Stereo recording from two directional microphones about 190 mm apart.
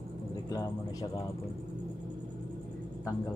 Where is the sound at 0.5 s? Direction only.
20° left (ahead or behind).